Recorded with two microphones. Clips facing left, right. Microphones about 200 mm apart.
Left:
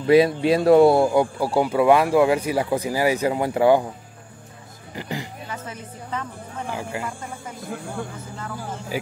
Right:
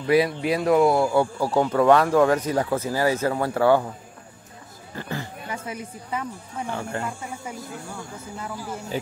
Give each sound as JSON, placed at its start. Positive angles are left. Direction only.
{"t": 0.0, "sound": "speech", "side_deg": 25}
{"t": 1.1, "sound": "speech", "side_deg": 15}
{"t": 4.9, "sound": "a sound", "side_deg": 15}
{"t": 5.5, "sound": "speech", "side_deg": -10}
{"t": 6.7, "sound": "speech", "side_deg": 10}
{"t": 8.9, "sound": "speech", "side_deg": 10}